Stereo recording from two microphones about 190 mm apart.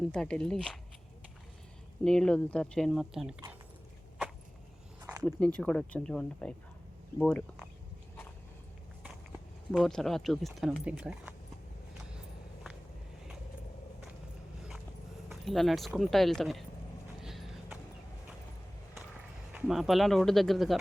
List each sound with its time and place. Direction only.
0.1 s speech: 5° left (ahead or behind)
2.0 s speech: 5° left (ahead or behind)
5.2 s speech: 5° left (ahead or behind)
9.7 s speech: centre (ahead or behind)
15.3 s speech: centre (ahead or behind)
17.2 s clip-clop: centre (ahead or behind)
19.5 s speech: centre (ahead or behind)